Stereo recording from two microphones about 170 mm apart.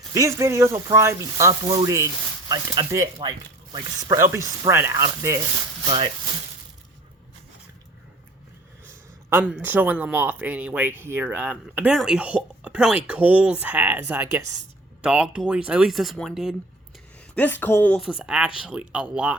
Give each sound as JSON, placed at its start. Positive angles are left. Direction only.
{"t": 0.1, "sound": "speech", "side_deg": -15}
{"t": 4.1, "sound": "speech", "side_deg": -15}
{"t": 9.3, "sound": "speech", "side_deg": -10}
{"t": 17.3, "sound": "speech", "side_deg": 10}
{"t": 18.1, "sound": "speech", "side_deg": -5}